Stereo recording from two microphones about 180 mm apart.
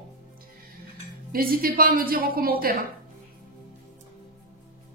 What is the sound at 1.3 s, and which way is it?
A woman's voice, 55° right (ahead or behind).